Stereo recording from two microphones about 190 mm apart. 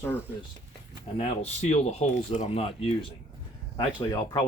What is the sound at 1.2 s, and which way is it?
Speech, 35° left (ahead or behind).